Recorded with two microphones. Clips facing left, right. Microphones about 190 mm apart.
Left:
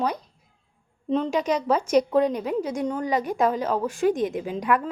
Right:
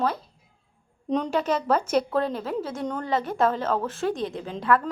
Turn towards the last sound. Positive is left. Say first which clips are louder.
# even
turn(degrees=15)  # may be behind; listen again after turning